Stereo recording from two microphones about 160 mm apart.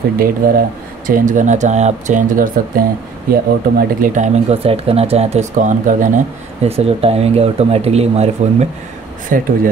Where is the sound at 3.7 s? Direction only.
55° right (ahead or behind).